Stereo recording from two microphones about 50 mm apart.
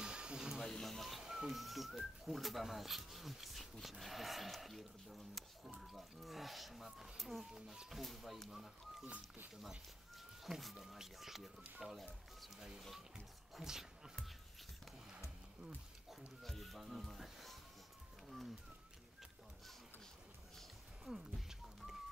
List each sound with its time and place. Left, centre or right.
0.0 s a sound: centre
0.6 s speech: centre
8.0 s speech: centre
9.0 s speech: right
10.4 s speech: centre
16.1 s music: centre
21.0 s a sound: centre